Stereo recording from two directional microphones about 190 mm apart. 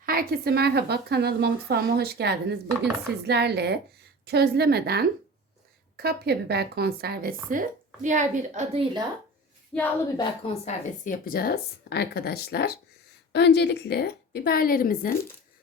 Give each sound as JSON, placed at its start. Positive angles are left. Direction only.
{"t": 0.0, "sound": "a woman's voice", "side_deg": -50}
{"t": 7.5, "sound": "a woman's voice", "side_deg": -45}
{"t": 9.7, "sound": "speech", "side_deg": 5}
{"t": 10.2, "sound": "a woman's voice", "side_deg": 30}